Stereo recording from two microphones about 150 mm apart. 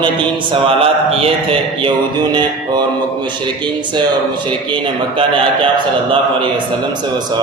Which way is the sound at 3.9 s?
30° right (ahead or behind).